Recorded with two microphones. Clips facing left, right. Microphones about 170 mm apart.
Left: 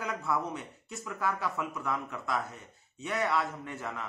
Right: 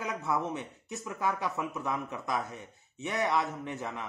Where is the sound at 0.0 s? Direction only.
20° right (ahead or behind).